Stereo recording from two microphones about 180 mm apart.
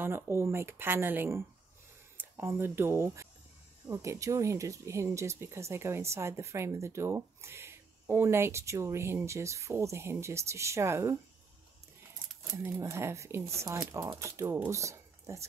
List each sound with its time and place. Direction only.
0.0 s speech: 15° right (ahead or behind)
12.6 s speech: 15° right (ahead or behind)